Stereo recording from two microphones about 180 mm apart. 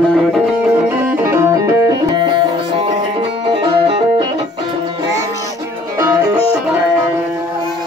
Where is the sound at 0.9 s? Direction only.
15° right (ahead or behind).